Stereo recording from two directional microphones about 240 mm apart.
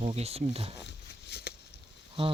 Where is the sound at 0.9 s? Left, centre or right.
Left.